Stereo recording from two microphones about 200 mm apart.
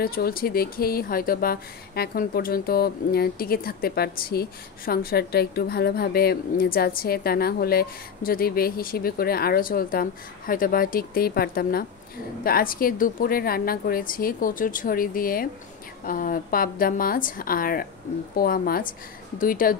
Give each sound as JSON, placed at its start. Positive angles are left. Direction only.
{"t": 0.0, "sound": "speech", "side_deg": 50}